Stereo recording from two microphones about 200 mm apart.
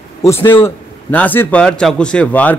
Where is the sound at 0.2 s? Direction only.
10° left (ahead or behind).